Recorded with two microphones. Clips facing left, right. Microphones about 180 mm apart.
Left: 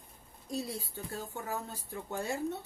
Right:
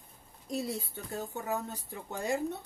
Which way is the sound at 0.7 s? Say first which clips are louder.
Right 3 dB; 20° right (ahead or behind).